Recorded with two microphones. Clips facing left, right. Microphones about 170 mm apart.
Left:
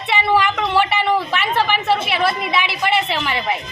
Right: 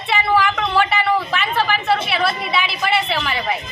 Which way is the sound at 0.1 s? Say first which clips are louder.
Even; 15° left (ahead or behind).